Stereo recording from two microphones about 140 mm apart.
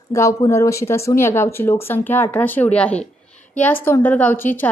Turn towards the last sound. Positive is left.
turn(degrees=15)  # may be behind; listen again after turning